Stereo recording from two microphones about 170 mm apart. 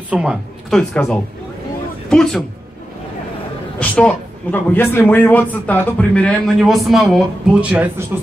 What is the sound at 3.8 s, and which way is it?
A man's voice, 5° left (ahead or behind).